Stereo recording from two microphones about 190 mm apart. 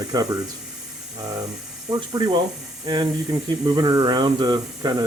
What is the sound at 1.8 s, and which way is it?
Speech, 20° right (ahead or behind).